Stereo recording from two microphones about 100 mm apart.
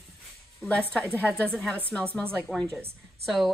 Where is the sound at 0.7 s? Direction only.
10° left (ahead or behind).